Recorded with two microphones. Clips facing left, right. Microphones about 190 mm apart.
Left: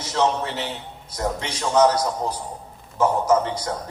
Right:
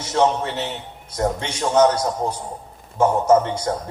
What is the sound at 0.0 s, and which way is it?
A man's voice, 30° right (ahead or behind).